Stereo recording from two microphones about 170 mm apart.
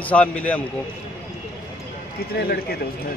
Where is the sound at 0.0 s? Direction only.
5° left (ahead or behind).